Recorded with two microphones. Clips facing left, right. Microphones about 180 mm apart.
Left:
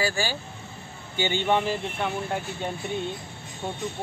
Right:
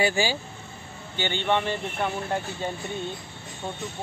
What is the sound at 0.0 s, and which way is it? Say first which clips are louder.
Speech: right 3 dB; 15° right (ahead or behind).